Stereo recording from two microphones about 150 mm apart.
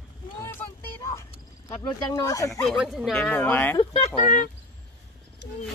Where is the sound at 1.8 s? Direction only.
30° left (ahead or behind).